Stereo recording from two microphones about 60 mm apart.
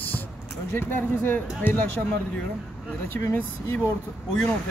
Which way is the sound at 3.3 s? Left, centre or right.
Left.